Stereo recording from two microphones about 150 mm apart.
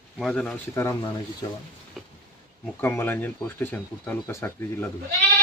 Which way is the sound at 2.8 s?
15° left (ahead or behind).